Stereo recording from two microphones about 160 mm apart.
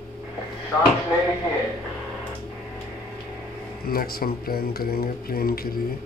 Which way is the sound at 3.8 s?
70° left (ahead or behind).